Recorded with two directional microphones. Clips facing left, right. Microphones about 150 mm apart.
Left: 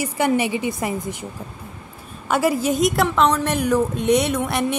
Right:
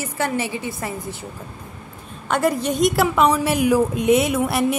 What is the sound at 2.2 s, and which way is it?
Speech, 5° left (ahead or behind).